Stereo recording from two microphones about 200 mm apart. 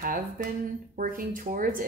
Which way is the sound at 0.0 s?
45° right (ahead or behind).